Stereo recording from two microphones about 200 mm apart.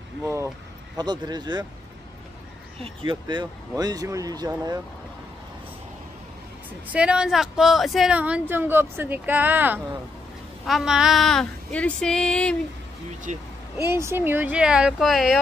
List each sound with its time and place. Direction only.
0.2 s speech: 15° right (ahead or behind)
2.8 s speech: 25° right (ahead or behind)
6.9 s speech: 5° right (ahead or behind)
10.6 s a sound: centre (ahead or behind)
13.3 s speech: 35° right (ahead or behind)
13.8 s a sound: 10° right (ahead or behind)